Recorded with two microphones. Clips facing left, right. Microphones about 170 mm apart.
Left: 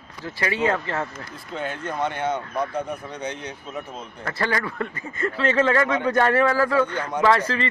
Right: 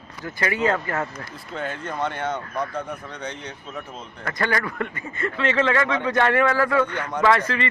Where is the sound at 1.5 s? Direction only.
Centre (ahead or behind).